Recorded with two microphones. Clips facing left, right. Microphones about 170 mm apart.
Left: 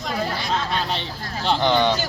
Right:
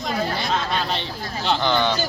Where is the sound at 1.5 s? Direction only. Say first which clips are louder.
Left 2 dB; 15° left (ahead or behind).